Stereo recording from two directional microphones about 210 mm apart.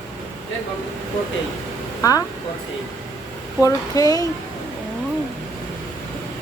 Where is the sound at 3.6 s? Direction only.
15° left (ahead or behind).